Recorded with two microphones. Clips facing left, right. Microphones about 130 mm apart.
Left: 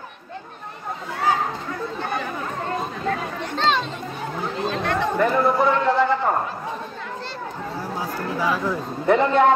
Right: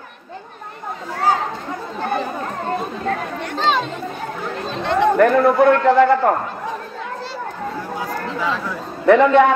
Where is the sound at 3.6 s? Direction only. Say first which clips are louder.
Right 2 dB; 5° right (ahead or behind).